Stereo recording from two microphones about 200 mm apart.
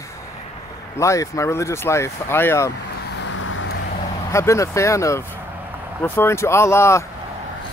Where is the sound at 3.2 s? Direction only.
80° left.